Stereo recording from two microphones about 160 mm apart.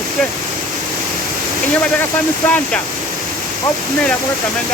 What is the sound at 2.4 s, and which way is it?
Speech, 10° left (ahead or behind).